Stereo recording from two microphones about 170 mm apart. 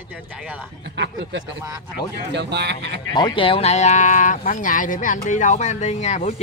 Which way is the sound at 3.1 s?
25° left (ahead or behind).